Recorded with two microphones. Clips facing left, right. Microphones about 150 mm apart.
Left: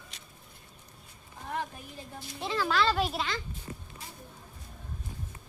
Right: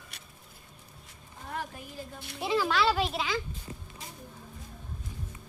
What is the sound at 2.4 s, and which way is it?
Speech, 10° right (ahead or behind).